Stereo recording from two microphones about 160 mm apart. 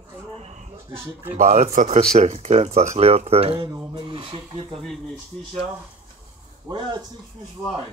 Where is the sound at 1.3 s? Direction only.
50° right (ahead or behind); by 4.8 s 30° right (ahead or behind).